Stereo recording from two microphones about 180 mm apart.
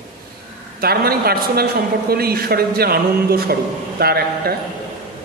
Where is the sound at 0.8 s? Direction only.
60° right (ahead or behind).